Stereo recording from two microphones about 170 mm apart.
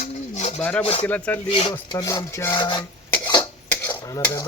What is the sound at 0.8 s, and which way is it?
Speech, 35° left (ahead or behind).